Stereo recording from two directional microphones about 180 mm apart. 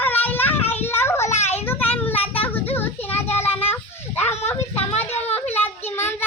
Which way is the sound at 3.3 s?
10° left (ahead or behind).